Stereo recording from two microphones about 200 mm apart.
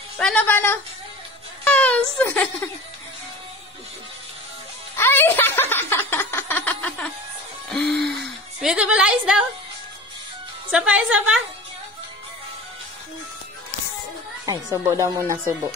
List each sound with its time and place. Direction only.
0.2 s speech: 5° left (ahead or behind)
4.9 s speech: 10° left (ahead or behind)
7.7 s a sound: centre (ahead or behind)
8.5 s a woman's voice: 5° right (ahead or behind)
10.7 s a woman's voice: 5° right (ahead or behind)
14.4 s a woman's voice: 15° right (ahead or behind)